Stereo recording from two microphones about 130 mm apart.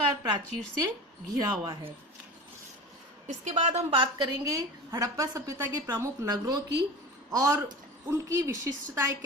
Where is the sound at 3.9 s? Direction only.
40° right (ahead or behind).